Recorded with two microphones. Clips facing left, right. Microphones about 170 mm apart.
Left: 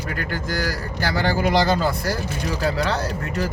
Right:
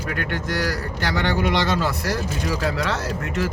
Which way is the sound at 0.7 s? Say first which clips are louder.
Even; 35° left (ahead or behind).